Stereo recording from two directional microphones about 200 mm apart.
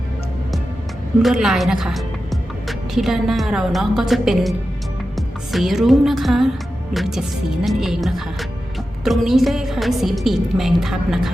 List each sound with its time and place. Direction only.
1.2 s a woman's voice: centre (ahead or behind)
5.1 s music: centre (ahead or behind)
6.9 s a woman's voice: centre (ahead or behind)